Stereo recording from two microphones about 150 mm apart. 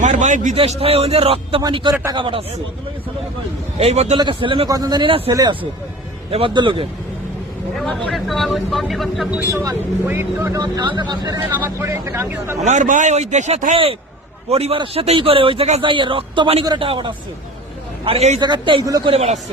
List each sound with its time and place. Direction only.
0.0 s a man's voice: 55° right (ahead or behind)
0.5 s a man's voice: 40° right (ahead or behind)
3.8 s a man's voice: 45° right (ahead or behind)
5.3 s a man's voice: 25° right (ahead or behind)
7.8 s speech: 5° left (ahead or behind)
9.5 s speech: 15° right (ahead or behind)
10.6 s speech: 30° right (ahead or behind)
11.5 s speech: 15° right (ahead or behind)
12.5 s a man's voice: 50° right (ahead or behind)
14.5 s a man's voice: 40° right (ahead or behind)
15.8 s a man's voice: 35° right (ahead or behind)
18.3 s a man's voice: 30° right (ahead or behind)
19.1 s a man's voice: 45° right (ahead or behind)